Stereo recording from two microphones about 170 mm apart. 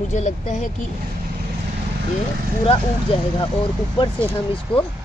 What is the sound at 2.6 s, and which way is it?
Speech, 30° left (ahead or behind).